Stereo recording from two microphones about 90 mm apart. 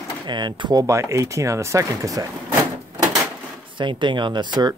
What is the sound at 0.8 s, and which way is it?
Speech, 35° right (ahead or behind).